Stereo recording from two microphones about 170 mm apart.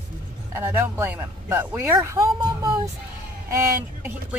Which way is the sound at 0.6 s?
15° right (ahead or behind).